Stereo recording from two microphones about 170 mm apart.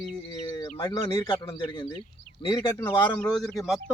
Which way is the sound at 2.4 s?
25° left (ahead or behind).